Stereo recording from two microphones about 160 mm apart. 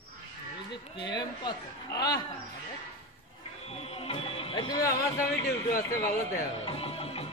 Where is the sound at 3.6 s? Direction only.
40° left (ahead or behind); by 5.2 s 20° left (ahead or behind).